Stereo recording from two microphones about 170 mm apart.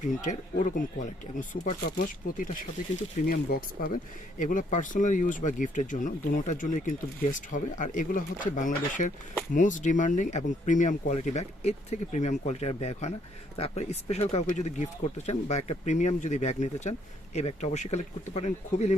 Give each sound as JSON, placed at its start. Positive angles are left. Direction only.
{"t": 0.0, "sound": "speech", "side_deg": 45}